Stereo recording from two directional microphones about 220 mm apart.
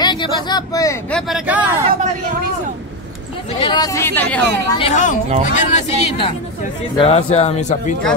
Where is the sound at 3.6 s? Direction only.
20° left (ahead or behind).